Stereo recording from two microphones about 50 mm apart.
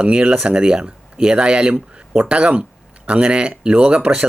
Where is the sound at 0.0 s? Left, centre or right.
Right.